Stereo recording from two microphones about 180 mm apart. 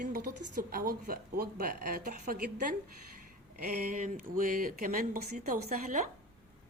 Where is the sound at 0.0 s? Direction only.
50° right (ahead or behind).